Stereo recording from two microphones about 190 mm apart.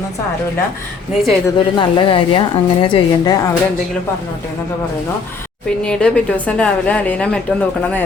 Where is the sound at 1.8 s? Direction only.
25° left (ahead or behind).